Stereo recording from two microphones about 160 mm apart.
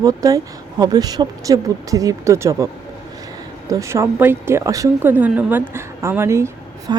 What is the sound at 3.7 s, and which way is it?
A woman's voice, 20° right (ahead or behind).